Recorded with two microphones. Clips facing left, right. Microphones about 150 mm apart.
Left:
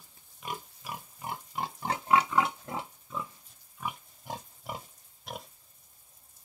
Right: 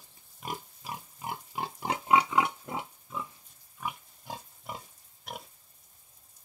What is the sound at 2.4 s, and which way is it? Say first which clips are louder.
Pig: even; 5° right (ahead or behind).